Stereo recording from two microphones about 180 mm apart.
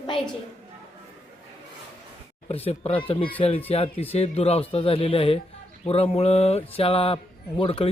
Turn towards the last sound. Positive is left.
turn(degrees=30)  # may be behind; listen again after turning